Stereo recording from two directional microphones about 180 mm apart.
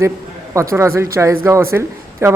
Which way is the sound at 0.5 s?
15° right (ahead or behind).